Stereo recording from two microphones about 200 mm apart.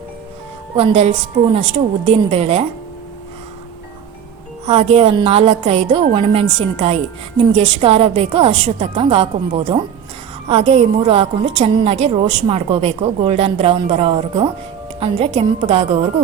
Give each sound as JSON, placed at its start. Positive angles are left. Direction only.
{"t": 0.8, "sound": "a woman's voice", "side_deg": -30}
{"t": 4.6, "sound": "a woman's voice", "side_deg": -30}